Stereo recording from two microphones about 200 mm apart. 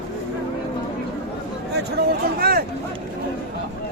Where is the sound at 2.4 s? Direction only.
50° right (ahead or behind).